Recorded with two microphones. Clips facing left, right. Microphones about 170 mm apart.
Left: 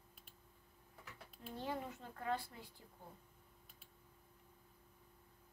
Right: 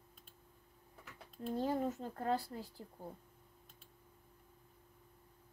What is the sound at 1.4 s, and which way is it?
Speech, 40° right (ahead or behind).